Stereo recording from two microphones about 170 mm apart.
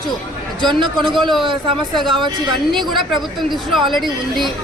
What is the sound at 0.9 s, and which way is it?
Speech, centre (ahead or behind).